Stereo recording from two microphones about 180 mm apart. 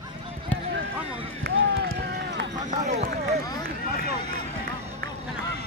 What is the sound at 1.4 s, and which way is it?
Basketball bounce, 65° right (ahead or behind).